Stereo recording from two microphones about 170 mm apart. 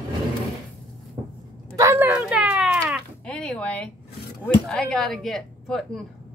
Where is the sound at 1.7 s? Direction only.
15° right (ahead or behind).